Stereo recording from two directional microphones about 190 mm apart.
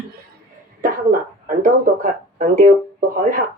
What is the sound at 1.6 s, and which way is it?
Speech, 45° right (ahead or behind).